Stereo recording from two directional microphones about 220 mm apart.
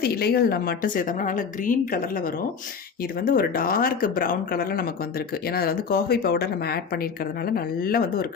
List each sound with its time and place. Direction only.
0.0 s a woman's voice: 45° left (ahead or behind)